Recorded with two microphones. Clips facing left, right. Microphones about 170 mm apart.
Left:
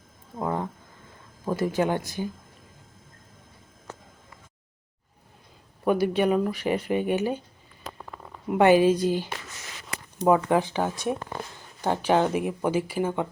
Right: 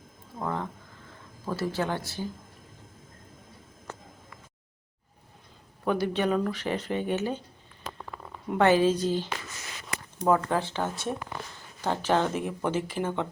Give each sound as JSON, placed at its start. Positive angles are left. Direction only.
{"t": 0.3, "sound": "a sound", "side_deg": 15}
{"t": 1.5, "sound": "speech", "side_deg": 15}
{"t": 5.8, "sound": "speech", "side_deg": 10}
{"t": 8.4, "sound": "speech", "side_deg": 15}